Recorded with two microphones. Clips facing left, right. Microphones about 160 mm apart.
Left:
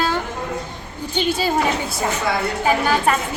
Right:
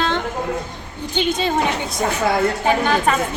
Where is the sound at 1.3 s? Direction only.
5° left (ahead or behind).